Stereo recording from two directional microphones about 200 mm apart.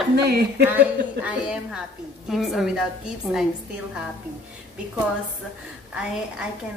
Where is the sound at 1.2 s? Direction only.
5° right (ahead or behind).